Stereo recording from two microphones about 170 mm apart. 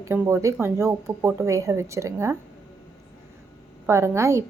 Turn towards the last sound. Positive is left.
turn(degrees=-15)  # may be behind; listen again after turning